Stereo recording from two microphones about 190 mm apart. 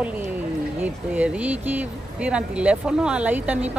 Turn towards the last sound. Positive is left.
turn(degrees=-5)  # may be behind; listen again after turning